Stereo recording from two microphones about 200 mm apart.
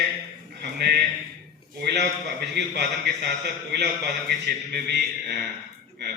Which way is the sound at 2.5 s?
55° right (ahead or behind).